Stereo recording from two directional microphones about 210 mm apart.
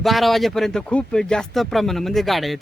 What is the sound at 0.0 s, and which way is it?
Speech, centre (ahead or behind).